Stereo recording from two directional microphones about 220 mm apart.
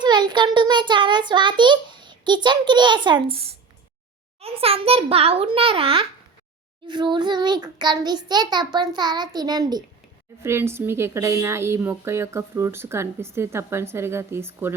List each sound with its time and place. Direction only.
0.0 s child singing: 20° right (ahead or behind)
4.4 s a child's voice: 25° right (ahead or behind); by 14.8 s 10° right (ahead or behind)